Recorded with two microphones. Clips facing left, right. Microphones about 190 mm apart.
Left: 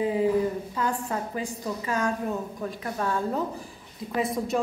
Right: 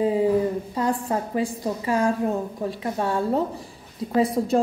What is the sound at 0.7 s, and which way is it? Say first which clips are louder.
A woman's voice: right 5 dB; 35° right (ahead or behind).